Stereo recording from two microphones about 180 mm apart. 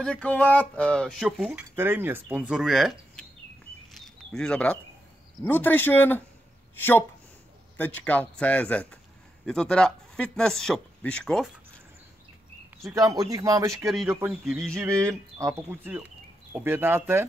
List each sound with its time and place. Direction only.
0.0 s speech: 5° left (ahead or behind)
1.5 s speech: 10° right (ahead or behind)
3.9 s a sound: centre (ahead or behind)
5.4 s a man's voice: 10° left (ahead or behind)
12.9 s speech: 20° right (ahead or behind)